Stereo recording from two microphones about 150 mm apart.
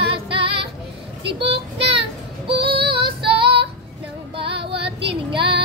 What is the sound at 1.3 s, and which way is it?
Child singing, 40° right (ahead or behind).